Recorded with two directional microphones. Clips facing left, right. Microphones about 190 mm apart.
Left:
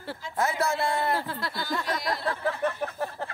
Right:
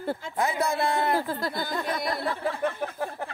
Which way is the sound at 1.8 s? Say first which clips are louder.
Right 1 dB; 55° right (ahead or behind).